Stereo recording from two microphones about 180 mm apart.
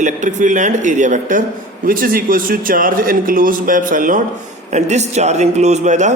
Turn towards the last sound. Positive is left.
turn(degrees=-40)  # may be behind; listen again after turning